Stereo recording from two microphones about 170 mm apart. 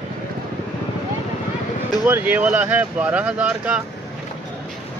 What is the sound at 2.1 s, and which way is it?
Speech, 10° right (ahead or behind).